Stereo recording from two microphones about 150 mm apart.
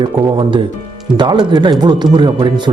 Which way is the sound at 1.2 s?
30° right (ahead or behind).